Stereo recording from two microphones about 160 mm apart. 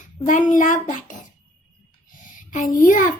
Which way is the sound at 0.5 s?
55° left (ahead or behind).